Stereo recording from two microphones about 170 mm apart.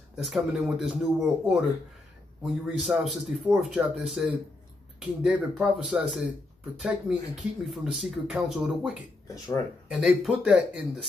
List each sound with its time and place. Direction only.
0.2 s speech: centre (ahead or behind)